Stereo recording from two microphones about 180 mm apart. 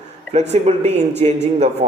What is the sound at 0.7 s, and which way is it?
Speech, 35° right (ahead or behind).